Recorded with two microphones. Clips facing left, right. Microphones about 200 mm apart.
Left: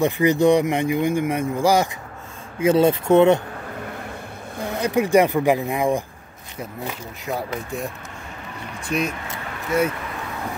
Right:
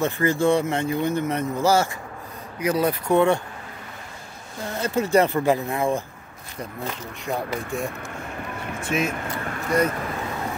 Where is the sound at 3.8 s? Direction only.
60° left (ahead or behind).